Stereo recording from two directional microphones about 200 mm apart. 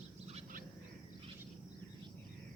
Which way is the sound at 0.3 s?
35° right (ahead or behind).